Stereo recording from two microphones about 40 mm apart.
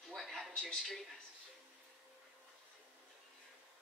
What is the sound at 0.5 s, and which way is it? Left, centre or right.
Speech, centre.